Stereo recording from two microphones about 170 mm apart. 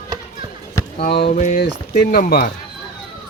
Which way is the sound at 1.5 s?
70° left (ahead or behind).